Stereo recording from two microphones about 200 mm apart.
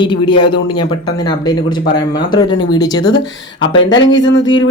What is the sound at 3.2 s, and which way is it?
Speech, 70° left (ahead or behind).